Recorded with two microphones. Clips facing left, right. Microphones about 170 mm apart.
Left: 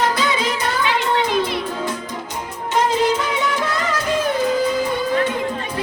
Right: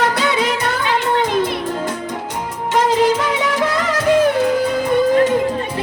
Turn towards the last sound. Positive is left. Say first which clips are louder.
# right 2 dB
turn(degrees=-65)  # may be behind; listen again after turning